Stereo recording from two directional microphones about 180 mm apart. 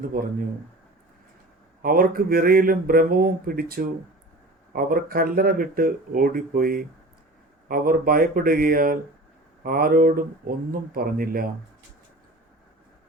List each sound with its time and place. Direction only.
0.1 s speech: 50° right (ahead or behind)
1.8 s speech: 50° right (ahead or behind)